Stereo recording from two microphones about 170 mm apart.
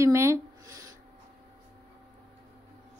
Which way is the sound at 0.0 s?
15° right (ahead or behind).